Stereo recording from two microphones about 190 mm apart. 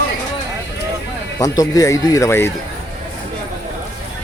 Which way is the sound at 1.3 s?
20° left (ahead or behind).